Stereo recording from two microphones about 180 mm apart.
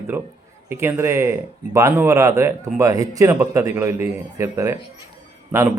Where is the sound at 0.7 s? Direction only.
15° right (ahead or behind).